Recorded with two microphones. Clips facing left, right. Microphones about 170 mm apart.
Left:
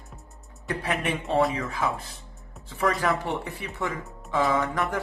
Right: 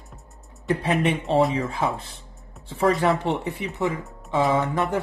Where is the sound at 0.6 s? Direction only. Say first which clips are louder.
Right 6 dB; 25° right (ahead or behind).